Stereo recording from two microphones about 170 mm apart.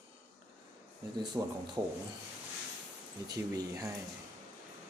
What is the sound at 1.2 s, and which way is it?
Speech, 25° right (ahead or behind).